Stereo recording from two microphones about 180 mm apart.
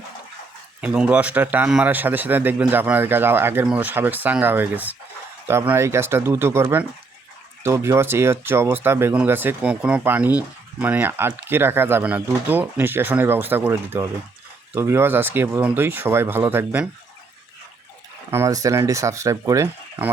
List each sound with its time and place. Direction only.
0.8 s speech: 5° right (ahead or behind)
18.3 s speech: 15° right (ahead or behind)